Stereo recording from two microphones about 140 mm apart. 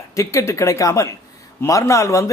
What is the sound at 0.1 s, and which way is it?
Speech, 20° left (ahead or behind).